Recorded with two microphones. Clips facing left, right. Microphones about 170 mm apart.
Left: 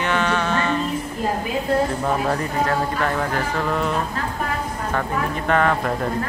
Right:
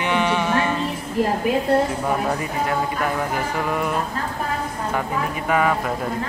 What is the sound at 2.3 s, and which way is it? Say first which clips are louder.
Speech: left 2 dB; 10° right (ahead or behind).